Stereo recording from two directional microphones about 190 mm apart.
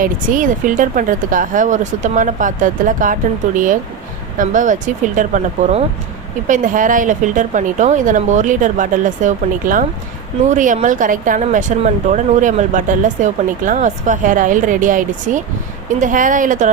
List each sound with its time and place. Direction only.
0.0 s speech: 45° right (ahead or behind)